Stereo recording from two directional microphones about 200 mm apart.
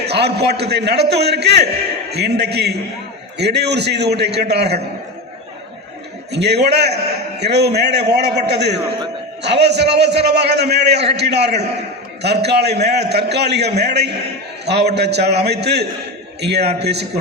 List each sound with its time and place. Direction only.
0.0 s a man's voice: 55° right (ahead or behind)
6.3 s a man's voice: 55° right (ahead or behind)